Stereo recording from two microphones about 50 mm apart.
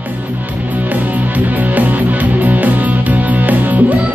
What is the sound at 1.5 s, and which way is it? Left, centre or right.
Music, right.